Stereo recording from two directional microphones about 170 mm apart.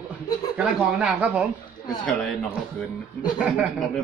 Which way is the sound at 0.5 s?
5° right (ahead or behind).